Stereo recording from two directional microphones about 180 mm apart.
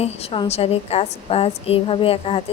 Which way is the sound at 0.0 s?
35° left (ahead or behind).